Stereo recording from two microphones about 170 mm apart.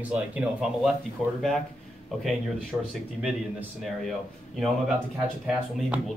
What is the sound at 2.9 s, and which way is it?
Speech, centre (ahead or behind).